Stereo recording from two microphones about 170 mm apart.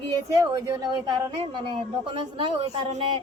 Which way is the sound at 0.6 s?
20° right (ahead or behind).